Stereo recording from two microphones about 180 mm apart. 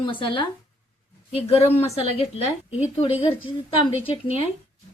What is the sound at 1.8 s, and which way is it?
Speech, 35° left (ahead or behind).